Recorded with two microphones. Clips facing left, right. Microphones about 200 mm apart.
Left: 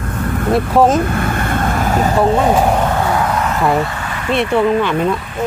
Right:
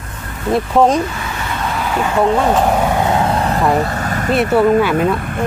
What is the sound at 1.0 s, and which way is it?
Vehicle, 55° left (ahead or behind).